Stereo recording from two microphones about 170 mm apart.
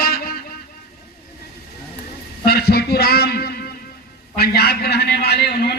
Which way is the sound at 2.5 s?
65° left (ahead or behind).